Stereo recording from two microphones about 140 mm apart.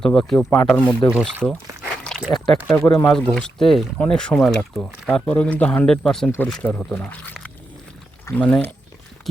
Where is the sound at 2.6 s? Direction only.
10° left (ahead or behind).